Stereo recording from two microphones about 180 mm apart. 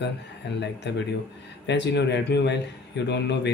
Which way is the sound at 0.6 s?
75° left (ahead or behind).